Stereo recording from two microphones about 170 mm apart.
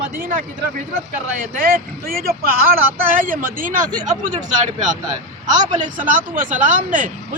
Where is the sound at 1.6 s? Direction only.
60° right (ahead or behind).